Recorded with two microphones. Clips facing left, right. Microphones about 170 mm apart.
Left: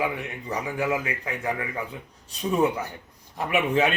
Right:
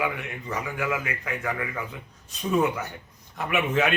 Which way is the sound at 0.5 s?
30° left (ahead or behind).